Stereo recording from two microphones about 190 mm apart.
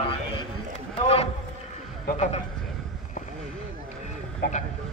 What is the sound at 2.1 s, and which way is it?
Speech, 35° left (ahead or behind).